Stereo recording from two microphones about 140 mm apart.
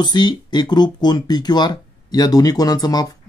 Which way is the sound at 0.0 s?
30° left (ahead or behind).